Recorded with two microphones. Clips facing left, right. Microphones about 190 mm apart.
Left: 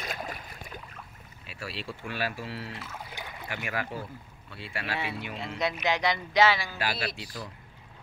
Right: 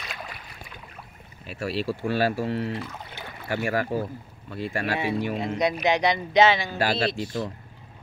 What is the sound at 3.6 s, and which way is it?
Speech, 40° right (ahead or behind).